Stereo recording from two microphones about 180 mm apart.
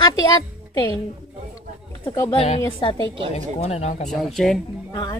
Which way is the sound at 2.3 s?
35° left (ahead or behind).